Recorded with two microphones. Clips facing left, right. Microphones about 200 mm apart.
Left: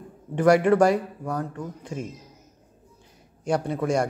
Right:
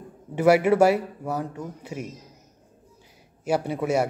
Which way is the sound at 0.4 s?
10° right (ahead or behind).